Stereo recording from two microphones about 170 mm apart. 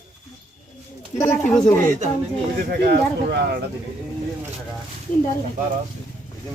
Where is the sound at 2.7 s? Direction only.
65° right (ahead or behind).